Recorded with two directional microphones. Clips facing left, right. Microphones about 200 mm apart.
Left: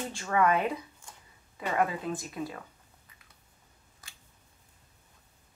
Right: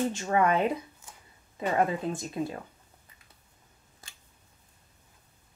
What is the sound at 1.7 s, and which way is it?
Speech, 30° right (ahead or behind).